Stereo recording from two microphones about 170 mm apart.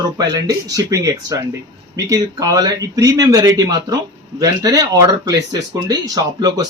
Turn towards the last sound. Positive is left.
turn(degrees=-20)  # may be behind; listen again after turning